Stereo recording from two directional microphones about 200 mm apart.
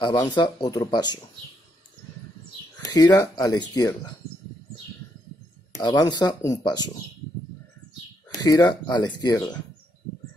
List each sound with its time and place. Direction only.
0.0 s speech: 20° left (ahead or behind)
2.8 s speech: 20° left (ahead or behind)
5.7 s speech: 20° left (ahead or behind)
8.3 s speech: 15° left (ahead or behind)